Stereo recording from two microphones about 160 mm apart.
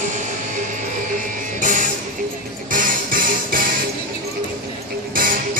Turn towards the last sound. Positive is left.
turn(degrees=-60)  # may be behind; listen again after turning